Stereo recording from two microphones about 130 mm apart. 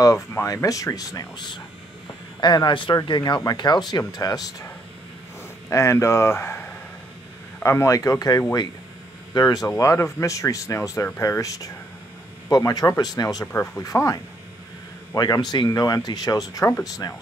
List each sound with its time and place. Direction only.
0.0 s speech: 25° left (ahead or behind)